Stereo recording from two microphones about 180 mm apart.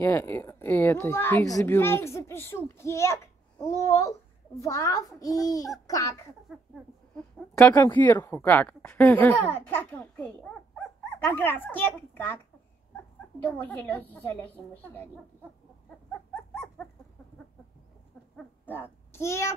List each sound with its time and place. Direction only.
0.0 s a woman's voice: 10° left (ahead or behind)
6.5 s a sound: centre (ahead or behind)
8.1 s a woman's voice: 15° left (ahead or behind)
13.4 s a woman's voice: 10° left (ahead or behind)
16.1 s dog: 5° left (ahead or behind)
18.3 s a sound: 10° left (ahead or behind)